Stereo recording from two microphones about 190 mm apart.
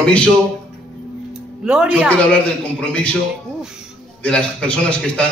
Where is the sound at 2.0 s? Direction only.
5° left (ahead or behind).